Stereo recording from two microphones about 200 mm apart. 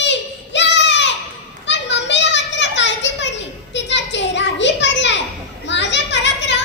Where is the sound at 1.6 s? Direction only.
65° left (ahead or behind).